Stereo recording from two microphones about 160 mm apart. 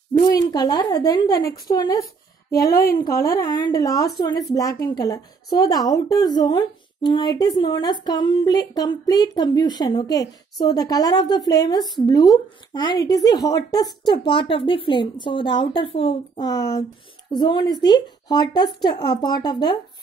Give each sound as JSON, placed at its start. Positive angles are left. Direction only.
{"t": 0.2, "sound": "a woman's voice", "side_deg": 25}
{"t": 2.7, "sound": "a woman's voice", "side_deg": 70}
{"t": 3.0, "sound": "a woman's voice", "side_deg": 20}